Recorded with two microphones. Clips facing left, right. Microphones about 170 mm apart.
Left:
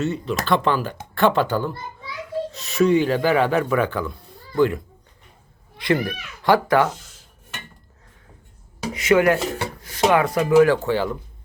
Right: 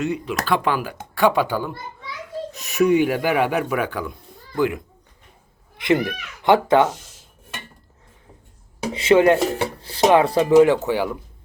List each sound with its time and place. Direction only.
0.0 s speech: 15° right (ahead or behind)
8.9 s speech: 30° right (ahead or behind); by 11.2 s 10° right (ahead or behind)